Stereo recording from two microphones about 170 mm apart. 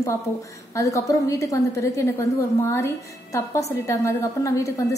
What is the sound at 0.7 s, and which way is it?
A woman's voice, 20° left (ahead or behind).